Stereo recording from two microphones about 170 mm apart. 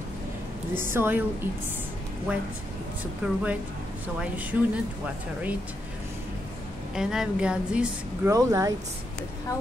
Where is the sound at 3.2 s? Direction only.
10° right (ahead or behind).